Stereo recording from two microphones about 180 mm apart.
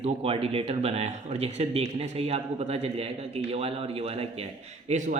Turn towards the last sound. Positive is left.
turn(degrees=-40)  # may be behind; listen again after turning